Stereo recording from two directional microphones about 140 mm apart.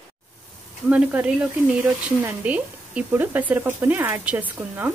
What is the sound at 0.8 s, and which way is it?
Speech, 10° right (ahead or behind).